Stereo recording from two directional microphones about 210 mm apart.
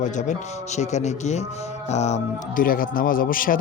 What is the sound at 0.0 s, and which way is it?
Speech, 35° left (ahead or behind).